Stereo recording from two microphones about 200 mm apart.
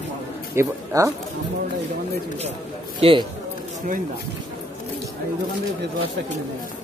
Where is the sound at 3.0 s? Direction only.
30° right (ahead or behind).